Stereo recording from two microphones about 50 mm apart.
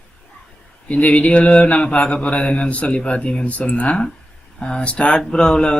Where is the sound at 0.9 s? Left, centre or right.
Left.